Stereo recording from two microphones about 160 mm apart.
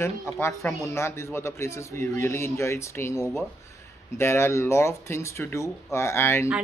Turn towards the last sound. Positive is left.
turn(degrees=15)  # may be behind; listen again after turning